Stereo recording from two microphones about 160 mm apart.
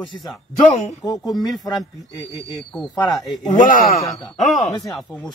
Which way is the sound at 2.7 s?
Centre (ahead or behind).